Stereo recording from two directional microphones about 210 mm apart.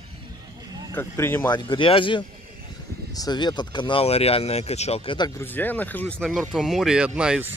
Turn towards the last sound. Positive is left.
turn(degrees=-5)  # may be behind; listen again after turning